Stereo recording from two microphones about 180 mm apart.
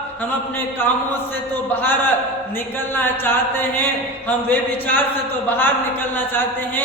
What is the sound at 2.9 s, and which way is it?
A man's voice, 10° left (ahead or behind).